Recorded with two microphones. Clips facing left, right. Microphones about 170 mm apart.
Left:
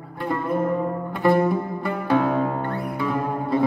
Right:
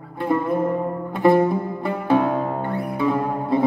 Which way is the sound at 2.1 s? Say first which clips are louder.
Right 1 dB; 15° right (ahead or behind).